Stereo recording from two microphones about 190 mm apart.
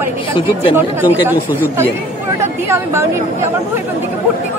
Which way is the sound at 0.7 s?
10° right (ahead or behind).